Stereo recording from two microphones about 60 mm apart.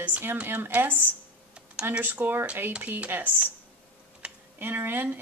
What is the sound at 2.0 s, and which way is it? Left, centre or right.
Speech, right.